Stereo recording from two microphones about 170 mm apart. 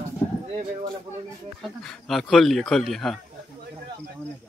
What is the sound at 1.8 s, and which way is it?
Speech, centre (ahead or behind).